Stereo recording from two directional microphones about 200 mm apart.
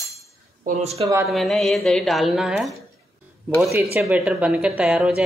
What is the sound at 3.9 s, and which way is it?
A woman's voice, 10° right (ahead or behind).